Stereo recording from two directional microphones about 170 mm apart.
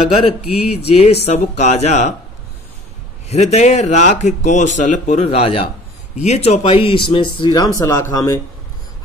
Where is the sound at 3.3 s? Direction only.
40° left (ahead or behind).